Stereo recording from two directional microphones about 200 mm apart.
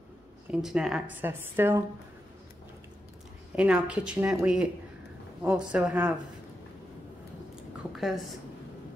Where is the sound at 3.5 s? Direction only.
5° right (ahead or behind).